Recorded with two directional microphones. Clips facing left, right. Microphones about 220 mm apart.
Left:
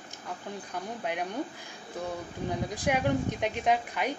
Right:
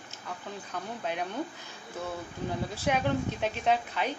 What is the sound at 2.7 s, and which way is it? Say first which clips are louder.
A woman's voice: left 1 dB; 10° left (ahead or behind).